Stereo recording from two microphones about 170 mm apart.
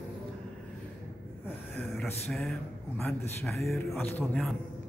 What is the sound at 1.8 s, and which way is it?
A man's voice, 5° left (ahead or behind).